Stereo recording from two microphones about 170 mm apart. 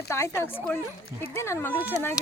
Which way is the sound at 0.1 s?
15° left (ahead or behind).